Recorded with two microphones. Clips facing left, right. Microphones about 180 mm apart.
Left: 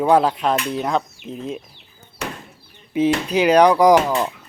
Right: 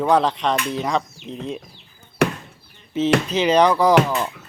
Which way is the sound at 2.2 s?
65° right (ahead or behind).